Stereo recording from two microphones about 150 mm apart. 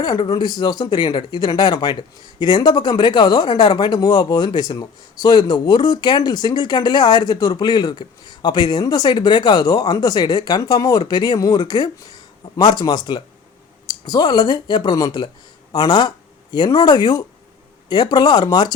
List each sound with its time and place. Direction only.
0.0 s speech: 30° left (ahead or behind)